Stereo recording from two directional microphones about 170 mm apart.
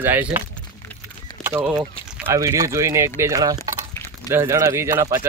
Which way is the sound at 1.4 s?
15° right (ahead or behind).